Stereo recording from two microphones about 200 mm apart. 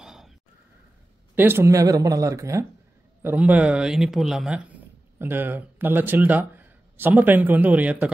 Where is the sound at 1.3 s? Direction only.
10° right (ahead or behind).